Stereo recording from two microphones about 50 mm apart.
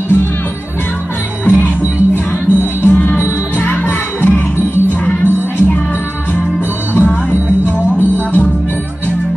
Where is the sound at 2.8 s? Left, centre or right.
Left.